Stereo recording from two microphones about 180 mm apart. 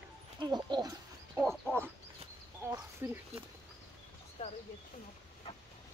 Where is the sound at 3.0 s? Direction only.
15° right (ahead or behind).